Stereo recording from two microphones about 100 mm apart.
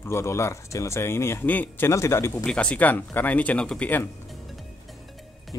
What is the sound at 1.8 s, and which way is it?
Speech, 30° left (ahead or behind).